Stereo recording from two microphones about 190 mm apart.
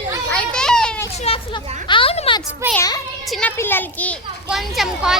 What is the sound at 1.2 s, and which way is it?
Speech, 25° left (ahead or behind).